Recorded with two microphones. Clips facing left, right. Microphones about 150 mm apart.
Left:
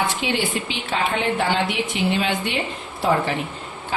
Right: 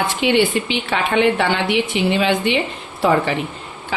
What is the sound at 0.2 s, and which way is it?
A woman's voice, 70° right (ahead or behind).